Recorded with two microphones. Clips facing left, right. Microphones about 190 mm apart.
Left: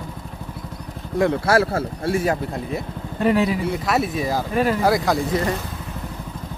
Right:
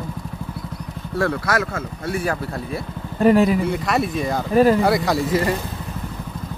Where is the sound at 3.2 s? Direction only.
45° right (ahead or behind).